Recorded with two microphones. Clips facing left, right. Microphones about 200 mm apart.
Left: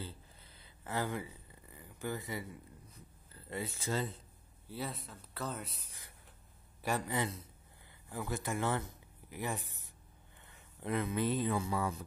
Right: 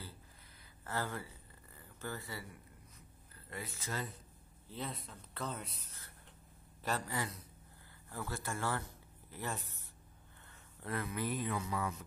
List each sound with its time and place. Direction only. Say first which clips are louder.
0.8 s speech: left 3 dB; 15° left (ahead or behind)
4.6 s a man's voice: left 2 dB; 10° left (ahead or behind); by 12.0 s 30° left (ahead or behind)